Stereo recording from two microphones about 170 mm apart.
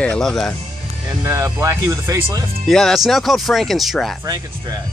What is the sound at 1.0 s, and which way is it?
Speech, 15° right (ahead or behind).